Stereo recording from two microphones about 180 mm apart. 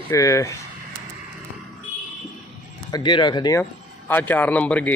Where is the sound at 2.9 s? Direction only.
25° left (ahead or behind).